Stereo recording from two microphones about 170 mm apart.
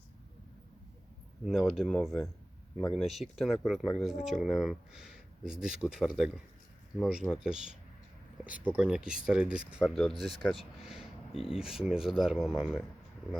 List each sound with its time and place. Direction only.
1.5 s speech: centre (ahead or behind)